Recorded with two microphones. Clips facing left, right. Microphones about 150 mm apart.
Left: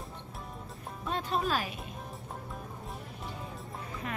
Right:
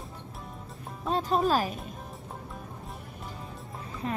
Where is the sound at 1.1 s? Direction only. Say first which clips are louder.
Right 6 dB; 40° right (ahead or behind).